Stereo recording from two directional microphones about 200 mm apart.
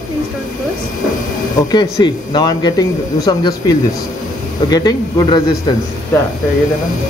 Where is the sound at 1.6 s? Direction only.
20° left (ahead or behind).